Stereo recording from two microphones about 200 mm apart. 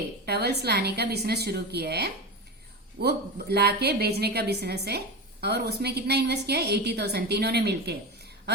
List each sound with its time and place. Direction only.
0.3 s a woman's voice: 55° right (ahead or behind)